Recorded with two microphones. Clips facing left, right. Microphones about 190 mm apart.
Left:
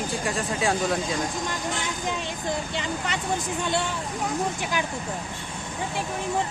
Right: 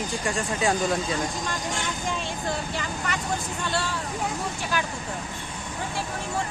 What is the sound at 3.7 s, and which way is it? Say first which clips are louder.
Speech: left 1 dB; 20° left (ahead or behind).